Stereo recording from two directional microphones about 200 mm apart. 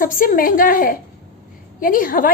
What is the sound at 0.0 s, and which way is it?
A woman's voice, 45° left (ahead or behind).